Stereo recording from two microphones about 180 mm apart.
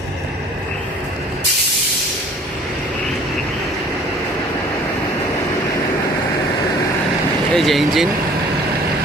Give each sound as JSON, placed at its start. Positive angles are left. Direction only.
{"t": 7.5, "sound": "speech", "side_deg": 0}